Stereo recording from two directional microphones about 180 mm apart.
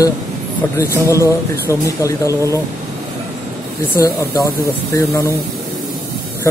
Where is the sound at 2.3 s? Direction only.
15° right (ahead or behind).